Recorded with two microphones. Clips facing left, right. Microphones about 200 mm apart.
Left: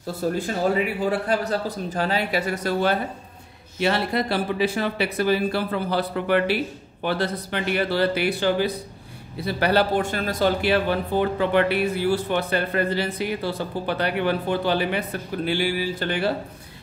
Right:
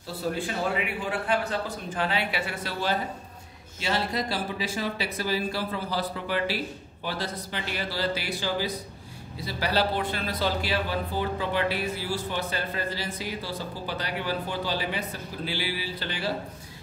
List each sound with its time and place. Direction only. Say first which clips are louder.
0.3 s a man's voice: left 5 dB; 40° left (ahead or behind)
3.8 s speech: left 6 dB; 60° left (ahead or behind)